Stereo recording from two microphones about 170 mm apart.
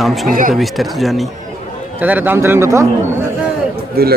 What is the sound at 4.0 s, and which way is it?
Speech, 65° right (ahead or behind).